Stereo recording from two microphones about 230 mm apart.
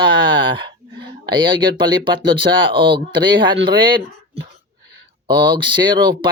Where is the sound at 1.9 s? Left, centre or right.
Right.